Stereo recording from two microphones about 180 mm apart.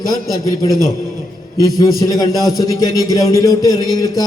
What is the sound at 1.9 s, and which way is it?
A man's voice, 20° left (ahead or behind).